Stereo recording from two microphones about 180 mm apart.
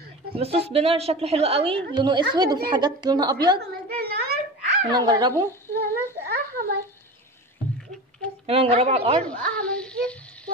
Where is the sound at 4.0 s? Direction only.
60° right (ahead or behind).